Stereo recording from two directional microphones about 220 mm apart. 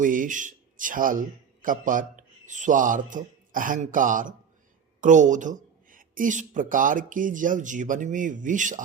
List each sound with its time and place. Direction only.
0.0 s a man's voice: 35° right (ahead or behind)